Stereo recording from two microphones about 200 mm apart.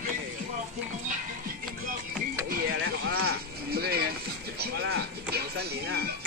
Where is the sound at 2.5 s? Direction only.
65° right (ahead or behind).